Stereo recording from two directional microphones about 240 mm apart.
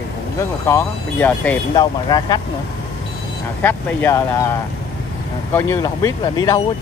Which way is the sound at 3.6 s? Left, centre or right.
Centre.